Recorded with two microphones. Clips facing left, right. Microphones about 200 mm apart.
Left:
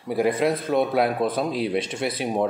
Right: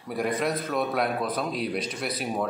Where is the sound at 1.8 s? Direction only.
25° left (ahead or behind).